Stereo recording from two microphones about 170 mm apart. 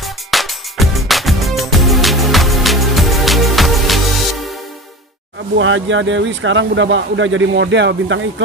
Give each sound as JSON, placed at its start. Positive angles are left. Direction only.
{"t": 0.0, "sound": "music", "side_deg": 0}
{"t": 5.9, "sound": "speech", "side_deg": -90}